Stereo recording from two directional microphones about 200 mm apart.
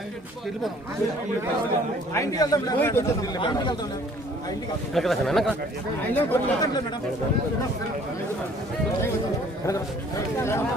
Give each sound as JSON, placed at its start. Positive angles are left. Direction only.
{"t": 2.1, "sound": "a man's voice", "side_deg": 20}
{"t": 4.9, "sound": "speech", "side_deg": 0}
{"t": 10.3, "sound": "speech", "side_deg": 15}